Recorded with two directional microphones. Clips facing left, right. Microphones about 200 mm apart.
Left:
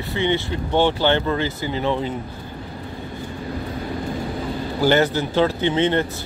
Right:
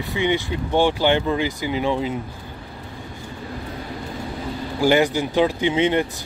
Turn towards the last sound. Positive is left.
turn(degrees=-10)  # may be behind; listen again after turning